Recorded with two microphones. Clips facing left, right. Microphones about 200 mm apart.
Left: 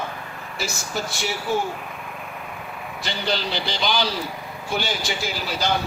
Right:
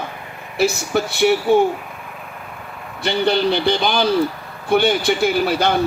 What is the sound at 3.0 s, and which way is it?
A man's voice, 60° right (ahead or behind).